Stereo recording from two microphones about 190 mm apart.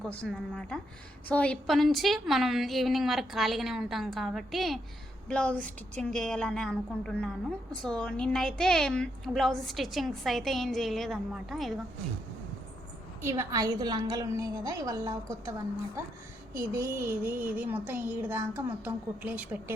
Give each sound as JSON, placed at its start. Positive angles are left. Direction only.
{"t": 0.0, "sound": "a woman's voice", "side_deg": 5}
{"t": 13.2, "sound": "speech", "side_deg": -15}